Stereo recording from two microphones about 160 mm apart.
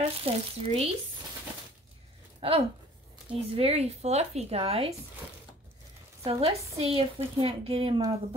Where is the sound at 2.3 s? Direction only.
40° right (ahead or behind).